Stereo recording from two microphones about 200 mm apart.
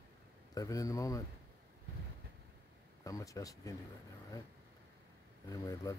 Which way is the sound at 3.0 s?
15° left (ahead or behind).